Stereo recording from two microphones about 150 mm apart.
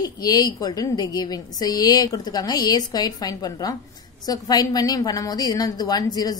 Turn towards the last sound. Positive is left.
turn(degrees=25)  # may be behind; listen again after turning